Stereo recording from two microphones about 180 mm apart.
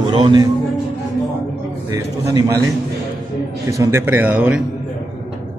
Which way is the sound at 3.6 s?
15° right (ahead or behind).